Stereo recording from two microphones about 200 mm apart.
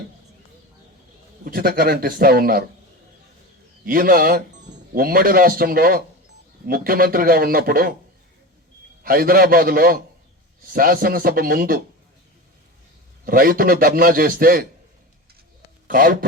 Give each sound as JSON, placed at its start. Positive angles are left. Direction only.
{"t": 1.5, "sound": "a man's voice", "side_deg": -50}
{"t": 3.8, "sound": "a man's voice", "side_deg": -45}
{"t": 9.0, "sound": "a man's voice", "side_deg": -45}
{"t": 13.2, "sound": "a man's voice", "side_deg": -45}
{"t": 15.9, "sound": "a man's voice", "side_deg": -45}